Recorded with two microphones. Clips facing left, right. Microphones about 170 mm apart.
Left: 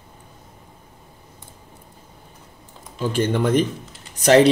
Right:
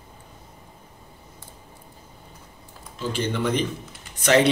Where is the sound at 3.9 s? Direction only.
35° left (ahead or behind).